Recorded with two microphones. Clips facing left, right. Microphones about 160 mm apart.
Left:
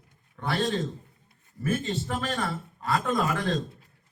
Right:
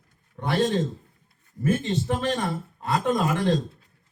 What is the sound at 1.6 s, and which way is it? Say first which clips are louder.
Speech: right 4 dB; 20° right (ahead or behind).